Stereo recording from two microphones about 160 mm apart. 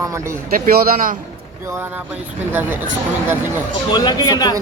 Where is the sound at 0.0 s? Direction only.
20° right (ahead or behind).